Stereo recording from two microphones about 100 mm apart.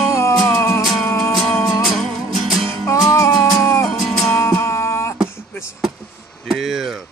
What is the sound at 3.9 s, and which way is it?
Music, centre (ahead or behind).